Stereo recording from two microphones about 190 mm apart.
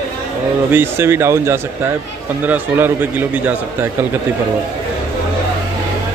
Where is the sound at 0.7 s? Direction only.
10° right (ahead or behind).